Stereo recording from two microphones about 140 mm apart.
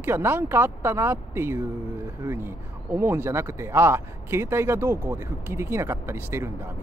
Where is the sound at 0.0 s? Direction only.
15° right (ahead or behind).